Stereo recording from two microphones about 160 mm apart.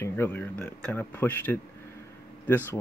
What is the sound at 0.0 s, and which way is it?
Speech, 10° left (ahead or behind).